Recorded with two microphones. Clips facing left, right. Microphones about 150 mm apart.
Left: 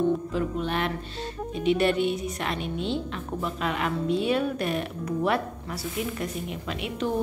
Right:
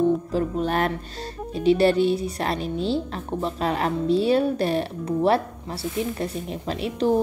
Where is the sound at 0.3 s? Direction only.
40° right (ahead or behind).